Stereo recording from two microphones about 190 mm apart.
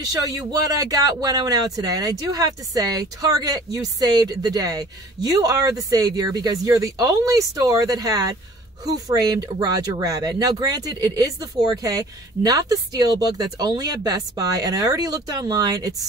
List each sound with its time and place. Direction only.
0.0 s speech: 20° right (ahead or behind)